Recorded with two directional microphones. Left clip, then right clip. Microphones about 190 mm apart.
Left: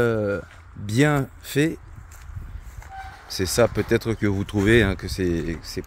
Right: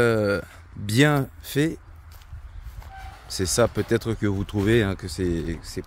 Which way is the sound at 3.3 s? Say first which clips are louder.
Left 2 dB; centre (ahead or behind).